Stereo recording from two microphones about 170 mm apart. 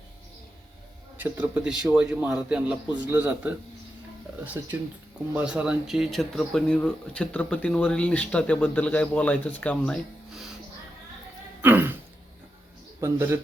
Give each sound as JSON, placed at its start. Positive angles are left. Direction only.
{"t": 1.2, "sound": "a man's voice", "side_deg": -10}
{"t": 5.3, "sound": "speech", "side_deg": -5}
{"t": 11.6, "sound": "throat clearing", "side_deg": -10}
{"t": 13.0, "sound": "a man's voice", "side_deg": -15}